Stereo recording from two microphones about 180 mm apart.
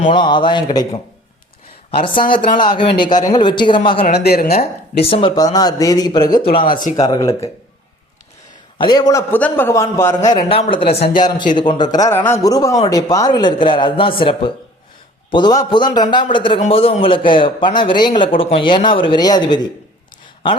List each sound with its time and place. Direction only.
0.1 s a man's voice: 25° left (ahead or behind)
2.0 s a man's voice: 30° left (ahead or behind)
4.1 s speech: 60° left (ahead or behind)
5.0 s a man's voice: 30° left (ahead or behind)
8.8 s a man's voice: 25° left (ahead or behind)
10.2 s a man's voice: 30° left (ahead or behind)
10.8 s speech: 55° left (ahead or behind)
11.5 s a man's voice: 25° left (ahead or behind)